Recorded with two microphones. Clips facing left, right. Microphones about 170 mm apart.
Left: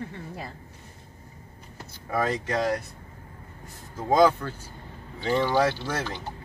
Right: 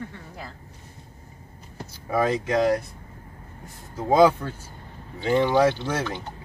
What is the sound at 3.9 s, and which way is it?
Speech, 10° right (ahead or behind).